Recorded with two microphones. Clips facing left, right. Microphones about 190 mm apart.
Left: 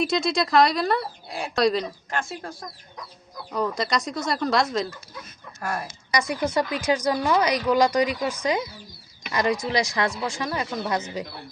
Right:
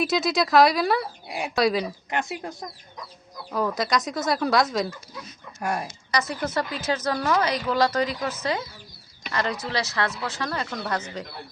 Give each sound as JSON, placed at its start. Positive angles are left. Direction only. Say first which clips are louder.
{"t": 0.0, "sound": "speech", "louder": "even", "side_deg": -5}
{"t": 2.0, "sound": "speech", "louder": "right 2 dB", "side_deg": -20}
{"t": 3.5, "sound": "speech", "louder": "right 1 dB", "side_deg": -5}
{"t": 5.5, "sound": "speech", "louder": "right 2 dB", "side_deg": -20}
{"t": 6.1, "sound": "speech", "louder": "left 3 dB", "side_deg": 10}